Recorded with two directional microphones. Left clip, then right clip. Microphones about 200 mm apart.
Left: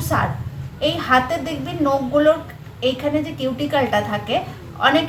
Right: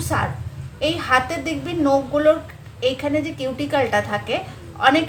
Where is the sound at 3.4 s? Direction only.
30° right (ahead or behind).